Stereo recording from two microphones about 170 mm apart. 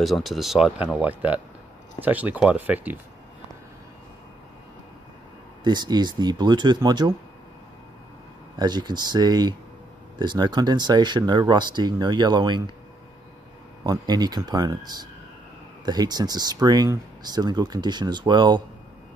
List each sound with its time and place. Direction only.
0.0 s speech: centre (ahead or behind)
5.6 s speech: 25° right (ahead or behind)
8.5 s speech: 25° right (ahead or behind)
13.8 s speech: 25° right (ahead or behind)